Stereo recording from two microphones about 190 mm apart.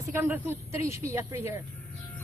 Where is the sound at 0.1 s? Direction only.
10° right (ahead or behind).